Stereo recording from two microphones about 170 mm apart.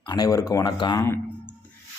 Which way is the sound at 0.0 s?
20° left (ahead or behind).